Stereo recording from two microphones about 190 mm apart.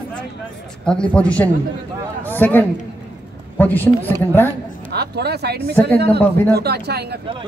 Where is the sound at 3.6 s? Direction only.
10° left (ahead or behind).